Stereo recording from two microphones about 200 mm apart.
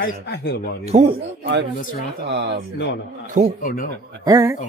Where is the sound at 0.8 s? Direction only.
30° right (ahead or behind).